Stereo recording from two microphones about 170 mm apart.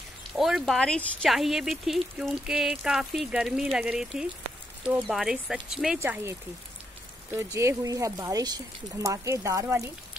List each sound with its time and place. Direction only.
0.4 s speech: centre (ahead or behind)
5.9 s speech: 15° right (ahead or behind)
7.5 s speech: 20° right (ahead or behind)